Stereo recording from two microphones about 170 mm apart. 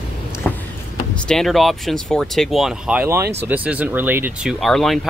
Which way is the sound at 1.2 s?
5° left (ahead or behind).